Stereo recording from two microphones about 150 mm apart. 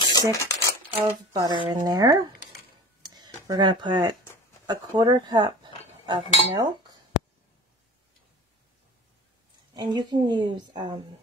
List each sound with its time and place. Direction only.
0.3 s speech: 20° left (ahead or behind)
1.0 s speech: 30° right (ahead or behind)
3.0 s a sound: 25° right (ahead or behind)
4.6 s speech: 25° right (ahead or behind)
6.0 s cutlery: 30° right (ahead or behind)
9.8 s a woman's voice: 30° right (ahead or behind)